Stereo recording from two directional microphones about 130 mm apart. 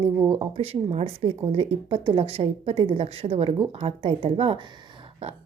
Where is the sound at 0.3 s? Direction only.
50° right (ahead or behind).